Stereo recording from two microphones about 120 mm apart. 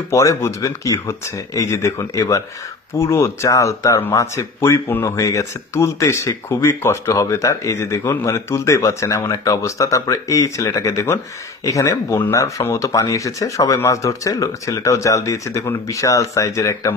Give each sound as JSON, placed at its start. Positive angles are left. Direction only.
{"t": 0.1, "sound": "speech", "side_deg": 25}